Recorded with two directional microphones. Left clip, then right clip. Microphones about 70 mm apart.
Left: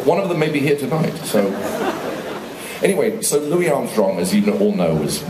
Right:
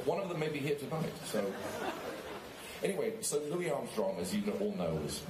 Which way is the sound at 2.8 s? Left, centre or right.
Centre.